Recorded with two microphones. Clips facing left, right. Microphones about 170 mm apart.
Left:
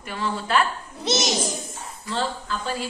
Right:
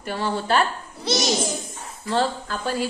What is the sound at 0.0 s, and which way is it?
Speech, 35° right (ahead or behind).